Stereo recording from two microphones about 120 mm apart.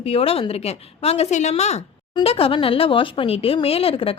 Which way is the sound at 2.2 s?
50° left (ahead or behind).